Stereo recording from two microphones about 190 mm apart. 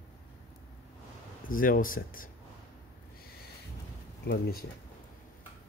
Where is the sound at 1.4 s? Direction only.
45° left (ahead or behind).